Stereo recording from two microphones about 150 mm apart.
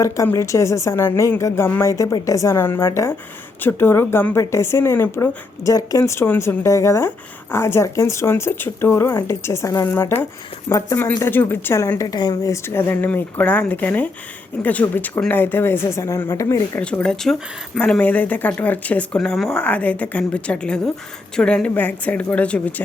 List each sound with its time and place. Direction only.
0.0 s a woman's voice: 20° left (ahead or behind)
16.8 s a woman's voice: 5° left (ahead or behind)